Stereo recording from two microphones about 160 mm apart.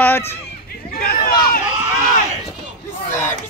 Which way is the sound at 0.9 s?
60° left (ahead or behind).